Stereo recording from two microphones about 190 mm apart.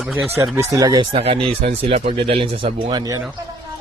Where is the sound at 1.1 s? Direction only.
30° right (ahead or behind).